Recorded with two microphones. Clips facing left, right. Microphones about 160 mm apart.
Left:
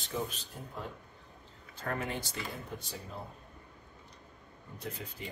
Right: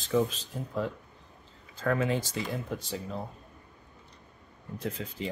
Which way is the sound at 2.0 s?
90° right.